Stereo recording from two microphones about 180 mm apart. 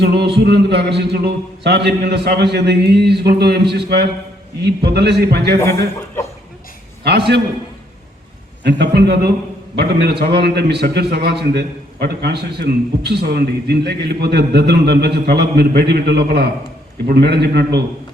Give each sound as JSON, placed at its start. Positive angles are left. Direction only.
{"t": 0.0, "sound": "a man's voice", "side_deg": -65}
{"t": 8.6, "sound": "a man's voice", "side_deg": -65}